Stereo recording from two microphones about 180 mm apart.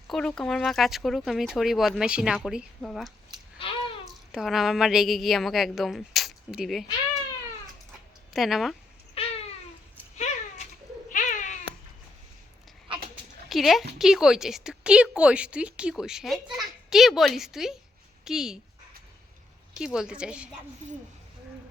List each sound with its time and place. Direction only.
0.1 s a woman's voice: 5° left (ahead or behind)
3.6 s babbling: 30° left (ahead or behind)
4.3 s a woman's voice: centre (ahead or behind)
8.3 s speech: centre (ahead or behind)
9.2 s cat: 35° left (ahead or behind)
11.1 s cat: 45° left (ahead or behind)
13.5 s a woman's voice: centre (ahead or behind)
19.7 s a woman's voice: 5° right (ahead or behind)